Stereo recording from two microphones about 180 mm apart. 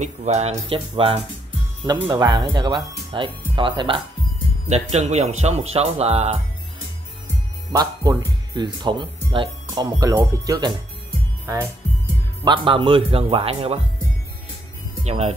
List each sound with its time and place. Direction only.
0.0 s speech: 40° right (ahead or behind)
4.9 s speech: 40° right (ahead or behind)
7.7 s speech: 20° right (ahead or behind)
12.4 s speech: 30° right (ahead or behind)
15.0 s speech: 35° right (ahead or behind)